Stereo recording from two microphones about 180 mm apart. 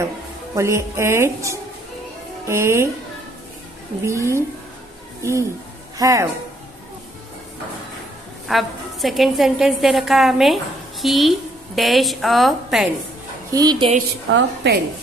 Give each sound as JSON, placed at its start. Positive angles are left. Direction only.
{"t": 0.6, "sound": "a woman's voice", "side_deg": -15}
{"t": 4.0, "sound": "a woman's voice", "side_deg": -15}
{"t": 8.5, "sound": "a woman's voice", "side_deg": 0}
{"t": 13.5, "sound": "a woman's voice", "side_deg": -20}
{"t": 14.3, "sound": "a woman's voice", "side_deg": -70}